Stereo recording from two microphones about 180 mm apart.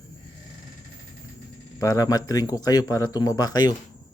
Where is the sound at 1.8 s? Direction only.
20° left (ahead or behind).